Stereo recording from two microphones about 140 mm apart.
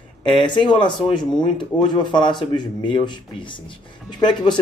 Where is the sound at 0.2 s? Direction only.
35° left (ahead or behind).